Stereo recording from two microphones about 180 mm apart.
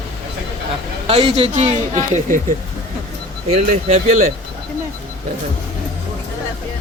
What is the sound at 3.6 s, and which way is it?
Speech, 40° right (ahead or behind).